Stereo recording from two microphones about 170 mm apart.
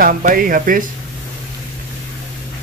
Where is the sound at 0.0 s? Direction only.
55° right (ahead or behind).